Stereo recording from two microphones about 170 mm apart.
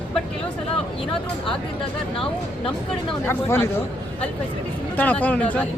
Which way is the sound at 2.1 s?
30° left (ahead or behind).